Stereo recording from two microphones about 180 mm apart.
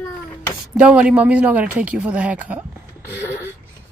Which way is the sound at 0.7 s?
5° right (ahead or behind).